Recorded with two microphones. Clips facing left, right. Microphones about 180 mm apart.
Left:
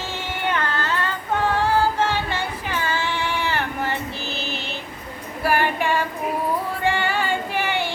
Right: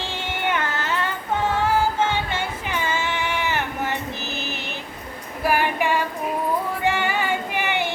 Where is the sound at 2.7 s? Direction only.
20° right (ahead or behind).